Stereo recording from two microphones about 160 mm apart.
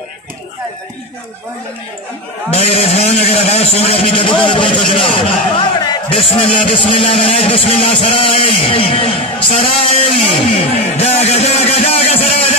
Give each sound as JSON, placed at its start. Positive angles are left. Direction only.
{"t": 2.5, "sound": "a man's voice", "side_deg": 40}